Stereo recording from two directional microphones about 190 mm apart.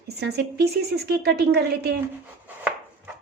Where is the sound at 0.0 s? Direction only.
60° right (ahead or behind).